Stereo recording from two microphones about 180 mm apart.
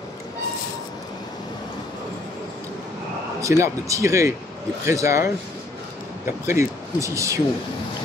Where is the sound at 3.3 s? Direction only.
15° right (ahead or behind).